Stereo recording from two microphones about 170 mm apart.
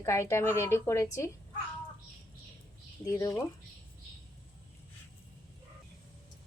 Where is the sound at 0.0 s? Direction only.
15° left (ahead or behind).